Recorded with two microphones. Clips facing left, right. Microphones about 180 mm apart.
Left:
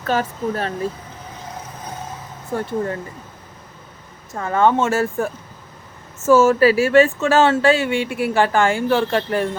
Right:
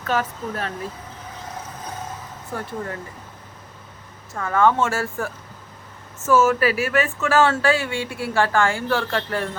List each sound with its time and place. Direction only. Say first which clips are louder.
0.1 s speech: left 3 dB; 30° left (ahead or behind)
2.5 s speech: left 7 dB; 25° left (ahead or behind)
4.4 s speech: left 2 dB; 25° left (ahead or behind)